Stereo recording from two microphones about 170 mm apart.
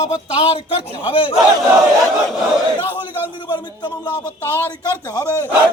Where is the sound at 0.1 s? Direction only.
30° left (ahead or behind).